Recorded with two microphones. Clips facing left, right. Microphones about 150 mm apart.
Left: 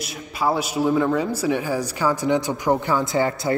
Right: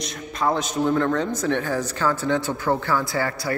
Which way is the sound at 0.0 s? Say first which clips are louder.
Left 1 dB; 5° left (ahead or behind).